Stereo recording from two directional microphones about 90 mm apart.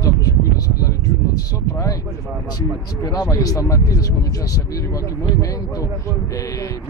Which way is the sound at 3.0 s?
40° left (ahead or behind).